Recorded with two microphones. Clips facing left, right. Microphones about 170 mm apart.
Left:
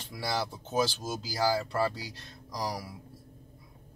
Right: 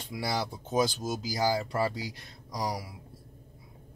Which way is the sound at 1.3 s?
20° right (ahead or behind).